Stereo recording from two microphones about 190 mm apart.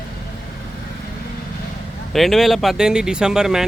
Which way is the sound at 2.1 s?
Centre (ahead or behind).